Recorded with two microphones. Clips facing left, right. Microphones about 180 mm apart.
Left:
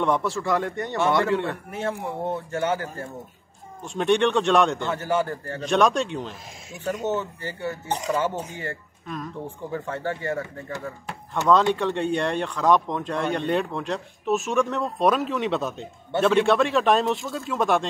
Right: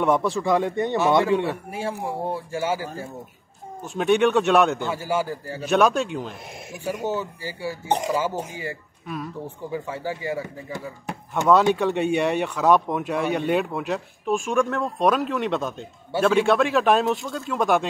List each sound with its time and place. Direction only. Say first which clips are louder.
0.0 s speech: right 3 dB; 15° right (ahead or behind)